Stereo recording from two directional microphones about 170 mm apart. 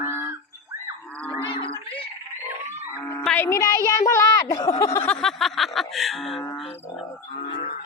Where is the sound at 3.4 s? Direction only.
15° left (ahead or behind).